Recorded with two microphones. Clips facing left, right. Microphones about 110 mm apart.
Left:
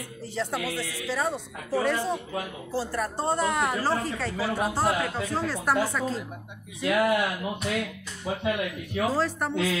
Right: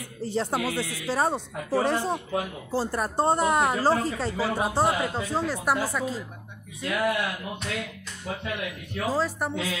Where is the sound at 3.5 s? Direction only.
35° right (ahead or behind).